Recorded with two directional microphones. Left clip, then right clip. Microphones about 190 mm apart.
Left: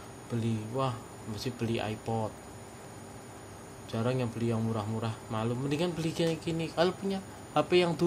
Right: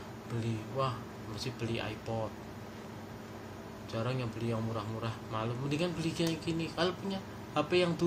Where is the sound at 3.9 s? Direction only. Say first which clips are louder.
Left 5 dB; 55° left (ahead or behind).